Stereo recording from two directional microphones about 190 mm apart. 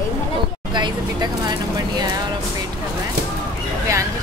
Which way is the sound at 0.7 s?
20° right (ahead or behind).